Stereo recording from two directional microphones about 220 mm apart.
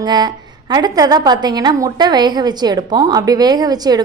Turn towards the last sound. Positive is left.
turn(degrees=-20)  # may be behind; listen again after turning